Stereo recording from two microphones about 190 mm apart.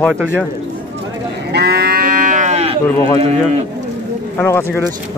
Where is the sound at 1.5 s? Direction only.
55° right (ahead or behind); by 2.7 s 35° right (ahead or behind).